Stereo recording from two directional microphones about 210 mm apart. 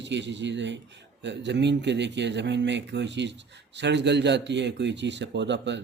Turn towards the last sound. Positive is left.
turn(degrees=-55)  # may be behind; listen again after turning